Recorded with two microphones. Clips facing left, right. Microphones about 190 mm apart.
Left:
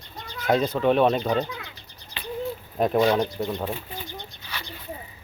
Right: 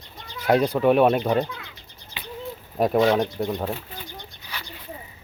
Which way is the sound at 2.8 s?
5° right (ahead or behind).